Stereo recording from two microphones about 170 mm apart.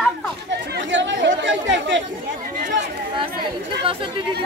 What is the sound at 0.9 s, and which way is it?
Chatter, 90° right.